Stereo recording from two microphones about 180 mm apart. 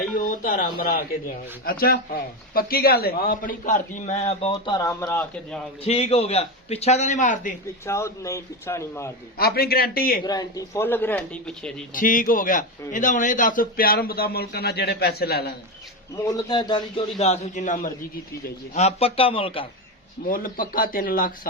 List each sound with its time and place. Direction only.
0.2 s a man's voice: 50° left (ahead or behind); by 5.5 s 10° left (ahead or behind)
5.8 s a man's voice: 35° left (ahead or behind)
7.9 s speech: 15° left (ahead or behind)
9.4 s a man's voice: 60° left (ahead or behind)
10.2 s speech: 20° left (ahead or behind)
11.9 s a man's voice: 50° left (ahead or behind)
16.1 s speech: 20° left (ahead or behind)
17.2 s a man's voice: 35° left (ahead or behind)
20.2 s a man's voice: 50° left (ahead or behind)